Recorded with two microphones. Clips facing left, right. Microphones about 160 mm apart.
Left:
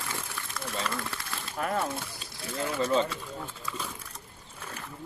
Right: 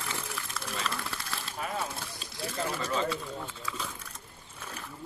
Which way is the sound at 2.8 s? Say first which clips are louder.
Left 9 dB; 30° left (ahead or behind).